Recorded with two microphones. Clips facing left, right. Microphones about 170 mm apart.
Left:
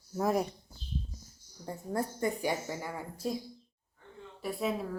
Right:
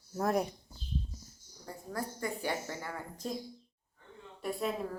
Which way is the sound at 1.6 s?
25° left (ahead or behind).